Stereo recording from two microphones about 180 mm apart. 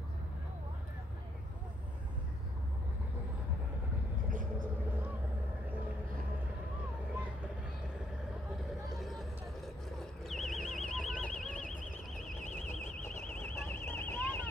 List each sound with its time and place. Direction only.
4.3 s vehicle: 50° right (ahead or behind)
9.0 s vehicle: centre (ahead or behind)